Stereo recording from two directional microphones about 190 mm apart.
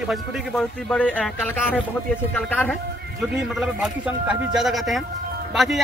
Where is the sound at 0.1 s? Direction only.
Centre (ahead or behind).